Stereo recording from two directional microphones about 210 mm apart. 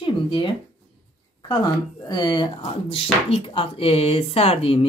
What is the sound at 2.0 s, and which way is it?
Speech, 20° left (ahead or behind).